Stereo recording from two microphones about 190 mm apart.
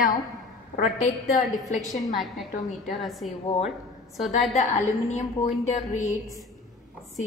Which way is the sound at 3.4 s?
30° left (ahead or behind).